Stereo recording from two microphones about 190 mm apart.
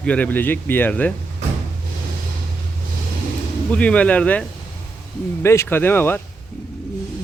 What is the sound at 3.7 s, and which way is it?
Speech, 5° left (ahead or behind).